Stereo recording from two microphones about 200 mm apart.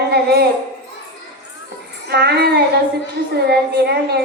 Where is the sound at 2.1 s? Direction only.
55° right (ahead or behind).